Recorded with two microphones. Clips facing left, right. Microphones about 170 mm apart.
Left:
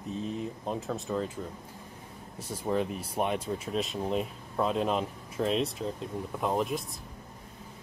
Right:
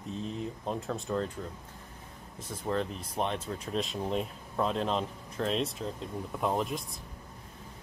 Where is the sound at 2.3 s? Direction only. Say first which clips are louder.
Left 2 dB; 10° left (ahead or behind).